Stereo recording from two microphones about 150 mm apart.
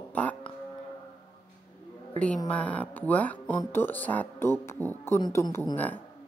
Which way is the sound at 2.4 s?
10° left (ahead or behind).